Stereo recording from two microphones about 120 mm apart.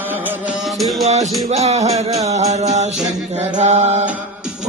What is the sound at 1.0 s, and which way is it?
Music, 65° right (ahead or behind).